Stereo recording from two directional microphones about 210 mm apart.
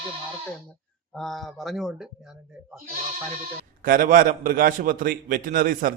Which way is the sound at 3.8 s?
40° right (ahead or behind).